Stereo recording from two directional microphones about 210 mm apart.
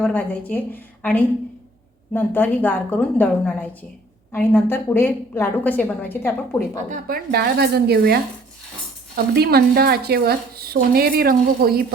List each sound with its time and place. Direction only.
0.0 s a woman's voice: 10° left (ahead or behind)
6.9 s a woman's voice: 45° right (ahead or behind)